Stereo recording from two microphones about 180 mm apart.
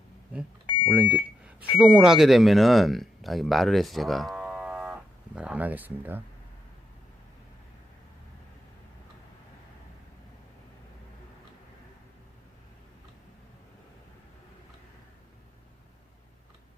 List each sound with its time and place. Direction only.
0.9 s speech: 10° right (ahead or behind)